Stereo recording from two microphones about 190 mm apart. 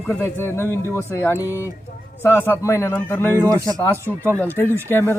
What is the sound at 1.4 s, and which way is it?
Speech, 10° right (ahead or behind).